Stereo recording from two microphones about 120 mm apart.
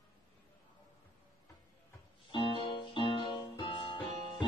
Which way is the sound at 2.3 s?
40° left (ahead or behind).